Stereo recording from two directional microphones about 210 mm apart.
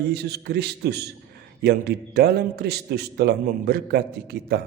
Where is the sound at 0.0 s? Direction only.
50° right (ahead or behind).